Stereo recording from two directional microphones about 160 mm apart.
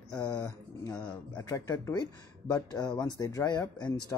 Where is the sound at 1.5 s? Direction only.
25° left (ahead or behind).